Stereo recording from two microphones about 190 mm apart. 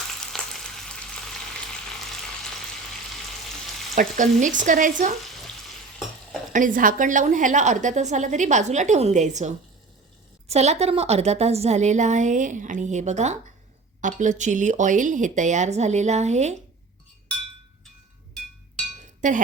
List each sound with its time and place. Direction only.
0.3 s frying: centre (ahead or behind)
3.9 s frying: 40° right (ahead or behind)
6.5 s a woman's voice: 45° right (ahead or behind)
10.5 s a woman's voice: 35° right (ahead or behind)
19.2 s a woman's voice: 40° right (ahead or behind)